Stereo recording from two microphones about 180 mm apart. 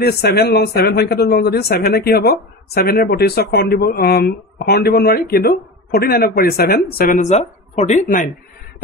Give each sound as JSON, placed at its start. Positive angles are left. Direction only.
{"t": 0.0, "sound": "speech", "side_deg": 60}